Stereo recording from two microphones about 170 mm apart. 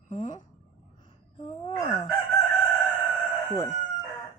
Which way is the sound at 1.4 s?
35° left (ahead or behind).